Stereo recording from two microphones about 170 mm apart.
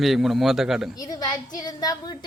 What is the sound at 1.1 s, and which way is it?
Speech, 20° left (ahead or behind).